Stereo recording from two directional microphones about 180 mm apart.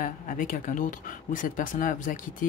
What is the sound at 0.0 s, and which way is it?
Speech, 45° left (ahead or behind).